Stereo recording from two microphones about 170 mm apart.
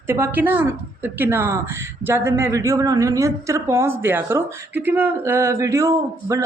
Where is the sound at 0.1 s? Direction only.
10° right (ahead or behind).